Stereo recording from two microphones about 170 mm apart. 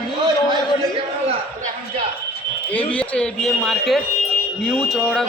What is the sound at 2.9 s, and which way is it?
A man's voice, 5° left (ahead or behind).